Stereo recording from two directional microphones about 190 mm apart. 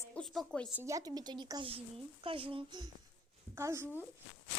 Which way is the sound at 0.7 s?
10° right (ahead or behind).